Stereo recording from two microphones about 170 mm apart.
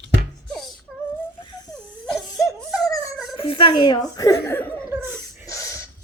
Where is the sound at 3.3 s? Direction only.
30° left (ahead or behind); by 4.7 s 15° left (ahead or behind).